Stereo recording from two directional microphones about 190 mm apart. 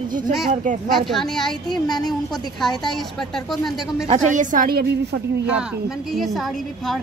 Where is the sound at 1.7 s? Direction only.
20° left (ahead or behind).